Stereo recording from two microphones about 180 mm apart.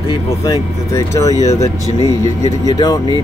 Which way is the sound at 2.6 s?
20° left (ahead or behind).